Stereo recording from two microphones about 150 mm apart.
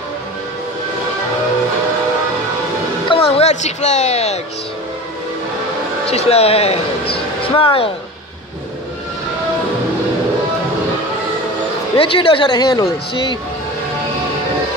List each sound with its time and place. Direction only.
3.1 s music: 40° left (ahead or behind)
6.0 s a woman's voice: 45° left (ahead or behind)
12.0 s a woman's voice: 35° left (ahead or behind)